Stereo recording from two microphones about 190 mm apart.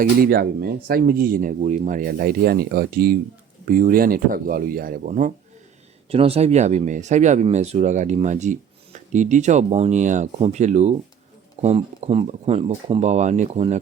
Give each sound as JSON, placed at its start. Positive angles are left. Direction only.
{"t": 0.0, "sound": "speech", "side_deg": -55}
{"t": 6.1, "sound": "speech", "side_deg": -30}